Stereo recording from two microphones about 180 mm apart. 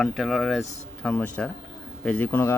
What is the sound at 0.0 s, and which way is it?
Speech, centre (ahead or behind).